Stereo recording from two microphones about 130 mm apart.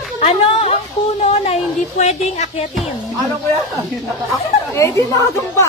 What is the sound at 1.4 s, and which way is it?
A woman's voice, 55° left (ahead or behind).